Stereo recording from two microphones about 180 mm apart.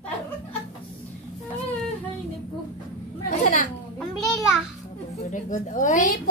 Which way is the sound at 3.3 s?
45° left (ahead or behind).